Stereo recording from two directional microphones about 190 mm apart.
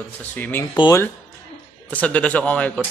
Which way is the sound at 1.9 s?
5° left (ahead or behind).